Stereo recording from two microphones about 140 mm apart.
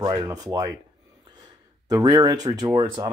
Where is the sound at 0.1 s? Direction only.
25° right (ahead or behind).